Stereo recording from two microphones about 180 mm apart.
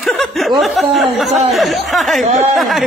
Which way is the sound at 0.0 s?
Centre (ahead or behind).